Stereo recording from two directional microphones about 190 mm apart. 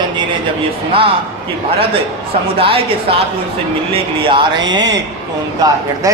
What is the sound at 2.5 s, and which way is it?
A man's voice, 30° right (ahead or behind).